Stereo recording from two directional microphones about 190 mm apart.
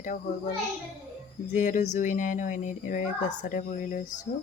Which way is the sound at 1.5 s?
40° left (ahead or behind).